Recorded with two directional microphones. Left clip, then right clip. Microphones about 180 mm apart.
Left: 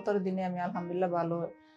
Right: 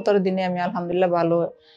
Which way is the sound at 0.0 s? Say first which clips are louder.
Right 11 dB; 25° right (ahead or behind).